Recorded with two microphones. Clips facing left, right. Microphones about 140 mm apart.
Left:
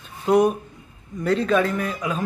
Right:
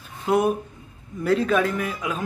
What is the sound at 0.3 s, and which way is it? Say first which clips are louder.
A man's voice: left 3 dB; 5° right (ahead or behind).